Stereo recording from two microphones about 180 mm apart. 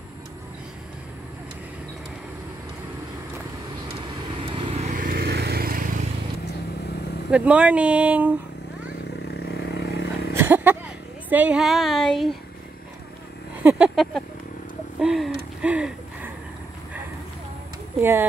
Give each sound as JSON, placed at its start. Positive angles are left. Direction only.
{"t": 4.4, "sound": "vehicle", "side_deg": -35}
{"t": 7.2, "sound": "speech", "side_deg": -5}
{"t": 9.3, "sound": "vehicle", "side_deg": 60}
{"t": 10.3, "sound": "a sound", "side_deg": -10}
{"t": 11.2, "sound": "speech", "side_deg": -10}
{"t": 13.6, "sound": "a sound", "side_deg": -5}